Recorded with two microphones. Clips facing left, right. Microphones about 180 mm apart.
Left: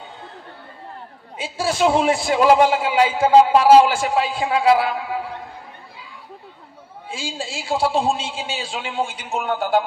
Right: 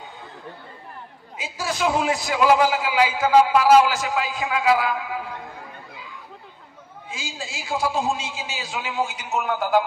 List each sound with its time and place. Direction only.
1.4 s a man's voice: 30° left (ahead or behind)
7.1 s a man's voice: 30° left (ahead or behind)